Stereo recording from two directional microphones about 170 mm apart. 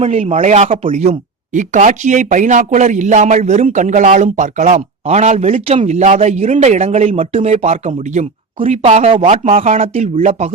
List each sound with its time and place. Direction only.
0.0 s speech: 40° right (ahead or behind)